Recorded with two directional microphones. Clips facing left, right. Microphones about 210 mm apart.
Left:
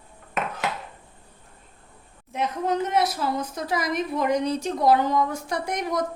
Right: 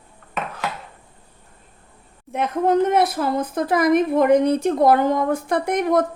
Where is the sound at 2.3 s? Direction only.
55° right (ahead or behind).